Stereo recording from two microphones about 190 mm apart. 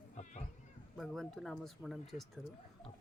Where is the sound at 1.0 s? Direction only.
Centre (ahead or behind).